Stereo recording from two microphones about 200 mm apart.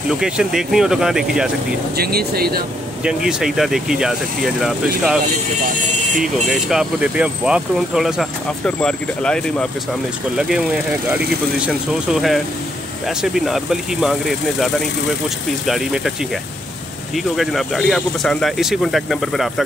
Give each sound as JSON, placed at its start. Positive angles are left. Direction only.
{"t": 0.1, "sound": "speech", "side_deg": -5}
{"t": 2.0, "sound": "speech", "side_deg": -50}
{"t": 3.0, "sound": "speech", "side_deg": -5}
{"t": 6.2, "sound": "speech", "side_deg": 0}
{"t": 17.1, "sound": "speech", "side_deg": 0}